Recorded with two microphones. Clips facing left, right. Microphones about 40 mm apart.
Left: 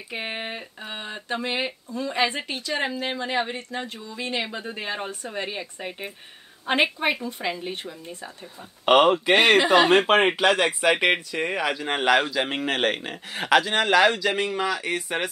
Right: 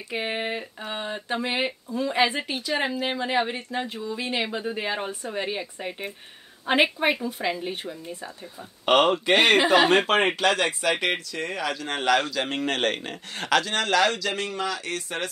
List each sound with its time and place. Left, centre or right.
0.1 s speech: centre